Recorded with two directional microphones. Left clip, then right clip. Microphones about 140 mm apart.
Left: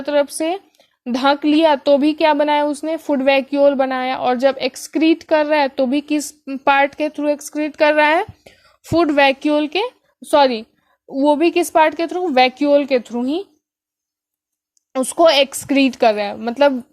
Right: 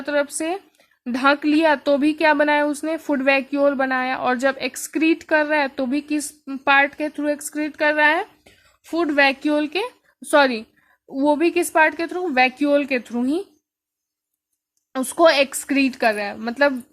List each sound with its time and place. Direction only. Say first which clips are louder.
0.0 s speech: left 5 dB; 20° left (ahead or behind)
6.7 s speech: left 2 dB; 40° left (ahead or behind)
7.1 s speech: left 4 dB; 15° left (ahead or behind)
7.8 s speech: left 4 dB; 45° left (ahead or behind)
9.4 s speech: left 4 dB; 20° left (ahead or behind)
12.5 s speech: left 5 dB; 15° left (ahead or behind)
14.9 s speech: left 3 dB; 20° left (ahead or behind)